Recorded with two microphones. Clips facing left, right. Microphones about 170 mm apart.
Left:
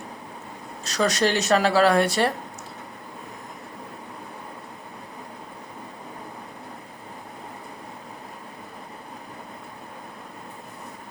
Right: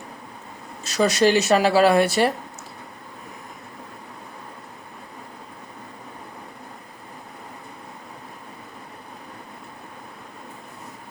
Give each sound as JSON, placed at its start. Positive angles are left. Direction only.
{"t": 0.9, "sound": "speech", "side_deg": -5}